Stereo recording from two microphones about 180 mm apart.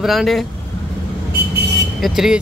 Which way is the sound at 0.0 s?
Centre (ahead or behind).